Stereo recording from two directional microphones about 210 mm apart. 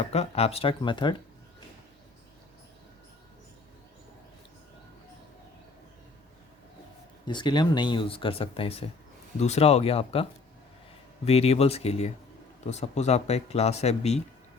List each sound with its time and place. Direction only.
0.0 s speech: 30° left (ahead or behind)
7.3 s speech: 20° left (ahead or behind)
11.3 s speech: 30° left (ahead or behind)